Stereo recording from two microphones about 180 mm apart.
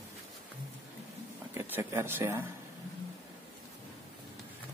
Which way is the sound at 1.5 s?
15° right (ahead or behind).